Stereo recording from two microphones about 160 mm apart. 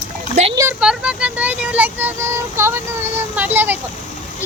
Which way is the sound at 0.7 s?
5° right (ahead or behind).